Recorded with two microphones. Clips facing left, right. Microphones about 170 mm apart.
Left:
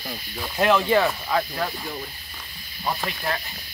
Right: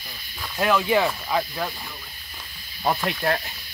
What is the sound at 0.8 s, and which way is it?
Speech, 10° right (ahead or behind).